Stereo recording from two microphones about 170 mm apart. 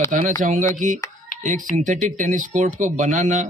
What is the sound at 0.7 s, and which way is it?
Speech, 45° right (ahead or behind).